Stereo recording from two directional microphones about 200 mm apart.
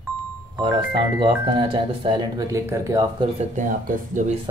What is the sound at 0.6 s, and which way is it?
Speech, 20° right (ahead or behind).